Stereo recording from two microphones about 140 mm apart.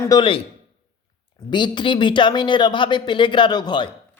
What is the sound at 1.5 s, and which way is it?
Speech, 35° left (ahead or behind).